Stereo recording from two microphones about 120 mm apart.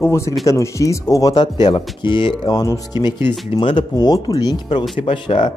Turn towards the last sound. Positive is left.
turn(degrees=40)  # may be behind; listen again after turning